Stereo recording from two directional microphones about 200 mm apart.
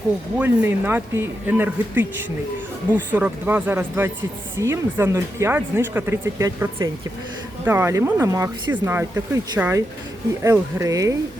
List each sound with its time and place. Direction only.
0.3 s speech: 10° right (ahead or behind)